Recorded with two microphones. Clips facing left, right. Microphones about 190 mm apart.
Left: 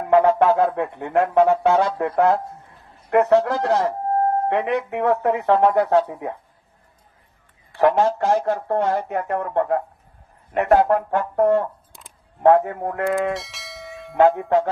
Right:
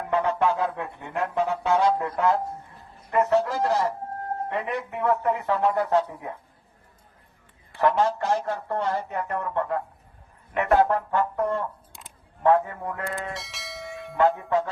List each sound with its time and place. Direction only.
0.1 s music: 50° left (ahead or behind)
3.1 s speech: 70° left (ahead or behind)
7.8 s speech: 55° left (ahead or behind)
10.5 s speech: 40° left (ahead or behind)
10.8 s speech: 50° left (ahead or behind)
12.5 s speech: 75° left (ahead or behind)
13.3 s church bell: centre (ahead or behind)
14.2 s speech: 70° left (ahead or behind)